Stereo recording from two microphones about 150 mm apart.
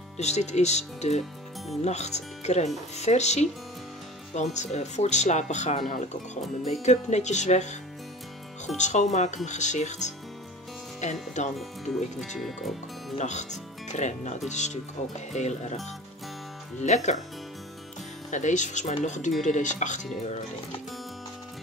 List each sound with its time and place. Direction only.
0.2 s speech: 50° left (ahead or behind)
8.7 s speech: 50° left (ahead or behind)
12.4 s speech: centre (ahead or behind)
13.2 s speech: 50° left (ahead or behind)
16.8 s speech: 50° left (ahead or behind)
18.3 s speech: 55° left (ahead or behind)